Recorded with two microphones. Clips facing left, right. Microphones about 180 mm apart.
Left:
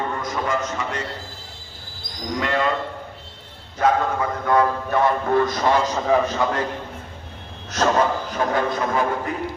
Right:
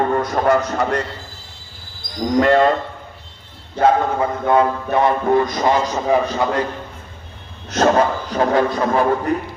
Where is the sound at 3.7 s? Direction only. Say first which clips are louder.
Right 4 dB; 30° right (ahead or behind).